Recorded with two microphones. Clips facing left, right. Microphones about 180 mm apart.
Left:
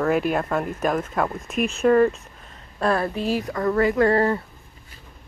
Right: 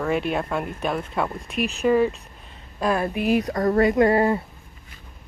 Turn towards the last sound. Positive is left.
turn(degrees=-15)  # may be behind; listen again after turning